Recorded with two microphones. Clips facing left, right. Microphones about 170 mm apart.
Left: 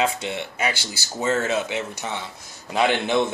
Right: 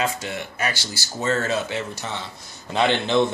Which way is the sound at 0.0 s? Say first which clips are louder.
Left 2 dB; 20° left (ahead or behind).